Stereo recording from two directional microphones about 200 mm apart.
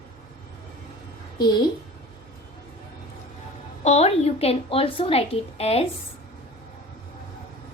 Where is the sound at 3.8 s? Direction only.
35° left (ahead or behind).